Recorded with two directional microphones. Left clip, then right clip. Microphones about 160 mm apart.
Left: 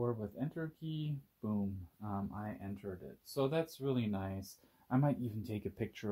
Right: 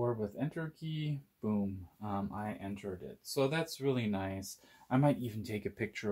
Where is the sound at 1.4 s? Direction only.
20° left (ahead or behind).